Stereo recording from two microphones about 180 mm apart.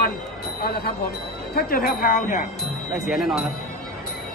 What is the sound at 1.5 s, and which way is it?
Speech, 60° left (ahead or behind).